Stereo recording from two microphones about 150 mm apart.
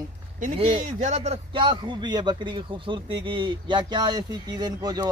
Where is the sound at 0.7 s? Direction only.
50° right (ahead or behind).